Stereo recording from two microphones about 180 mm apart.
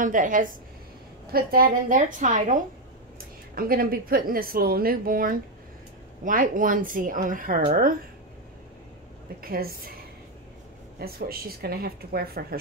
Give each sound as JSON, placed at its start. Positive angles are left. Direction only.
{"t": 0.0, "sound": "a woman's voice", "side_deg": -45}
{"t": 9.4, "sound": "speech", "side_deg": -55}
{"t": 11.0, "sound": "speech", "side_deg": -55}